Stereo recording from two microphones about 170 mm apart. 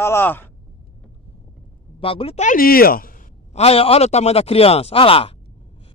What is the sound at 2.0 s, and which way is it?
Speech, 35° left (ahead or behind).